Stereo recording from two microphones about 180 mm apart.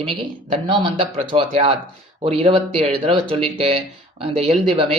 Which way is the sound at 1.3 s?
35° right (ahead or behind).